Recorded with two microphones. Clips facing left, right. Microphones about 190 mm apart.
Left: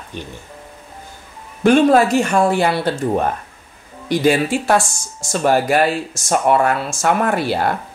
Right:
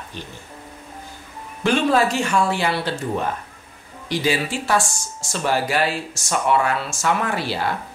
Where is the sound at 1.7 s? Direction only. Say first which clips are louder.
Left 7 dB; 50° left (ahead or behind).